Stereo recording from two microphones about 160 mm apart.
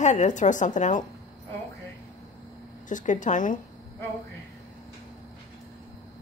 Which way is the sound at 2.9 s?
50° left (ahead or behind).